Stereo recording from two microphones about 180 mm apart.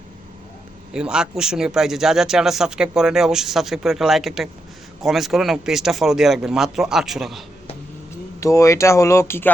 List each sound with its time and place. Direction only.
0.9 s speech: 5° right (ahead or behind)
8.4 s speech: 15° left (ahead or behind)